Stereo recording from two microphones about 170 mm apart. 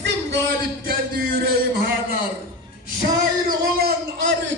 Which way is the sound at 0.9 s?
60° right (ahead or behind).